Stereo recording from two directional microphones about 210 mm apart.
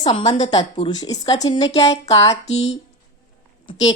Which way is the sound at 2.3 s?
30° left (ahead or behind).